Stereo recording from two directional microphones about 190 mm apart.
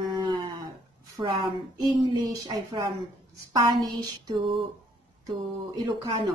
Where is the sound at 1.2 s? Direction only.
30° right (ahead or behind).